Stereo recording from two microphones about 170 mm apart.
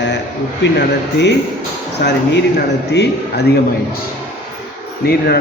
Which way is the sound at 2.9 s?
85° left.